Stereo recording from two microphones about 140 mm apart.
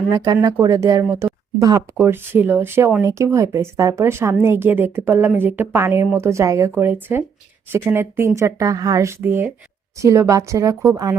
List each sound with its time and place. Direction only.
0.1 s speech: 25° right (ahead or behind)